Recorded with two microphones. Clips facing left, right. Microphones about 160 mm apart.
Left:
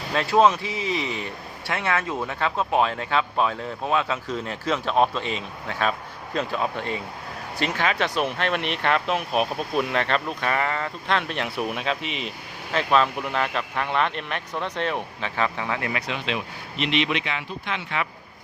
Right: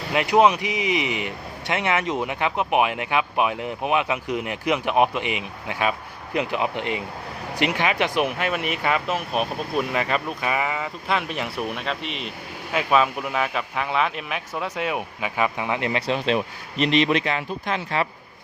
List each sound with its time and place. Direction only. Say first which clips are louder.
0.1 s a man's voice: right 1 dB; 15° right (ahead or behind); by 18.1 s 35° right (ahead or behind)